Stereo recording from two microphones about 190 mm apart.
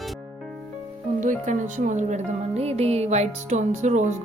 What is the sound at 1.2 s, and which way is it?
Speech, 40° right (ahead or behind).